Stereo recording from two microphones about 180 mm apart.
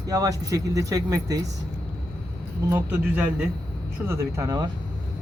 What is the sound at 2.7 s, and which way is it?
A man's voice, 10° right (ahead or behind).